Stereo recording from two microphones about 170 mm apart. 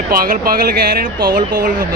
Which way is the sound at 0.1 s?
60° right (ahead or behind).